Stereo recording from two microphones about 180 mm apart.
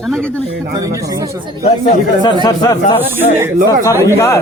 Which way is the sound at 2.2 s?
25° left (ahead or behind).